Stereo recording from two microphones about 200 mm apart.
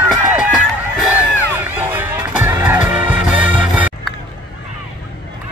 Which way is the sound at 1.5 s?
10° right (ahead or behind).